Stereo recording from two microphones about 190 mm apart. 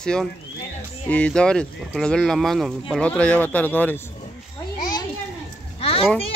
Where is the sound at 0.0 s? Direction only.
5° left (ahead or behind).